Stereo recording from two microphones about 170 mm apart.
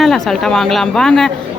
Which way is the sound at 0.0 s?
Centre (ahead or behind).